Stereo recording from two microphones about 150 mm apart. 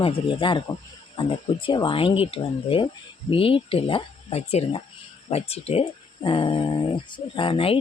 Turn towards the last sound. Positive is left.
turn(degrees=35)  # may be behind; listen again after turning